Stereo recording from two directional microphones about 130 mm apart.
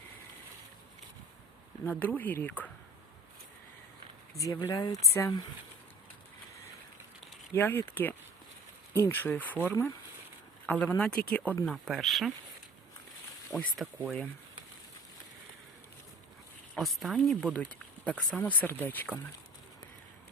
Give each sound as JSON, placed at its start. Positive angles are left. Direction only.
{"t": 1.8, "sound": "speech", "side_deg": 15}
{"t": 4.4, "sound": "speech", "side_deg": 25}
{"t": 7.5, "sound": "speech", "side_deg": 15}
{"t": 13.7, "sound": "speech", "side_deg": 0}
{"t": 16.7, "sound": "speech", "side_deg": 0}